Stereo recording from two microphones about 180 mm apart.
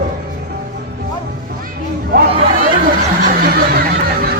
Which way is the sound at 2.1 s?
55° right (ahead or behind).